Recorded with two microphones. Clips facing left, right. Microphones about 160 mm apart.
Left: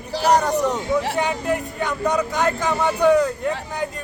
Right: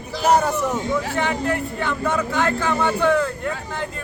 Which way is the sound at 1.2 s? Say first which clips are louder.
Even; 15° left (ahead or behind).